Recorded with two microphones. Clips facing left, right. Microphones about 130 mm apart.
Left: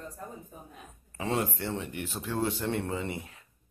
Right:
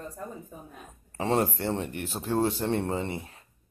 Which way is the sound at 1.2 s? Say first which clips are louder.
Right 4 dB; 35° right (ahead or behind).